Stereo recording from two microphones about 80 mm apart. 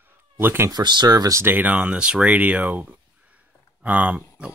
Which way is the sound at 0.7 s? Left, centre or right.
Right.